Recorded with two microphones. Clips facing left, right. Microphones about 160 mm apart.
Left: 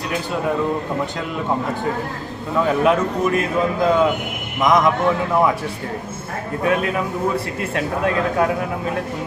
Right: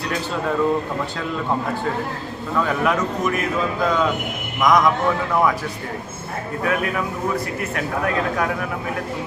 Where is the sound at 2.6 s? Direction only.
20° left (ahead or behind).